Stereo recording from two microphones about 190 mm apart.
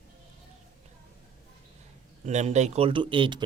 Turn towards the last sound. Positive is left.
turn(degrees=-25)  # may be behind; listen again after turning